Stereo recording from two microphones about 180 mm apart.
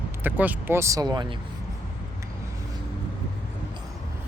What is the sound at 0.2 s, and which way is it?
Speech, 10° right (ahead or behind).